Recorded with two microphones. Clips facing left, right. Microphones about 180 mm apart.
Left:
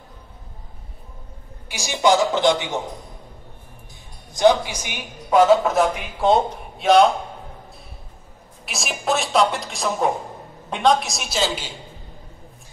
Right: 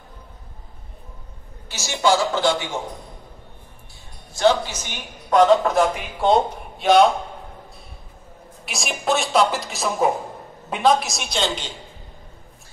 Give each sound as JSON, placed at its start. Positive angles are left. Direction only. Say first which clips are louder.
{"t": 1.7, "sound": "a woman's voice", "louder": "left 2 dB", "side_deg": 15}
{"t": 4.3, "sound": "a man's voice", "louder": "left 2 dB", "side_deg": 15}
{"t": 8.6, "sound": "a man's voice", "louder": "right 1 dB", "side_deg": 0}